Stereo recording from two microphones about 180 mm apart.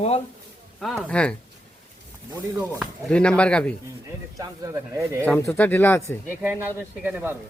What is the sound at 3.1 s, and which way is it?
Speech, 5° left (ahead or behind).